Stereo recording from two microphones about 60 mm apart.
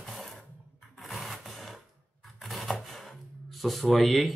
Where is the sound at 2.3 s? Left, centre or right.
Centre.